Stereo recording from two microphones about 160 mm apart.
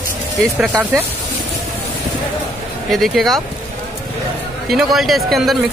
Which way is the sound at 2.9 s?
Centre (ahead or behind).